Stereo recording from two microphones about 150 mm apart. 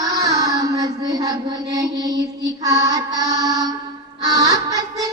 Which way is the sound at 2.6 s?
25° right (ahead or behind).